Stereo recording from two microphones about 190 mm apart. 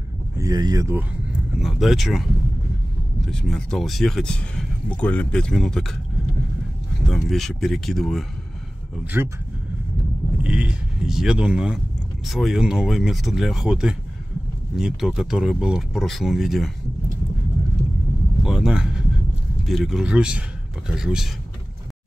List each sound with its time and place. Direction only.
0.4 s speech: 20° right (ahead or behind)
1.6 s speech: centre (ahead or behind)
3.3 s speech: 5° left (ahead or behind)
7.1 s speech: centre (ahead or behind)
9.0 s speech: 10° right (ahead or behind)
10.4 s speech: 5° right (ahead or behind)
18.4 s a man's voice: centre (ahead or behind)